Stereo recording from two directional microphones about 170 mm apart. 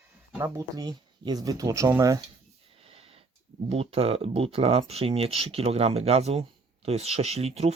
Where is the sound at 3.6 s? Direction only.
35° right (ahead or behind).